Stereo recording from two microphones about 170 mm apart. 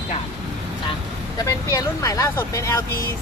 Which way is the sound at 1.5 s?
20° left (ahead or behind).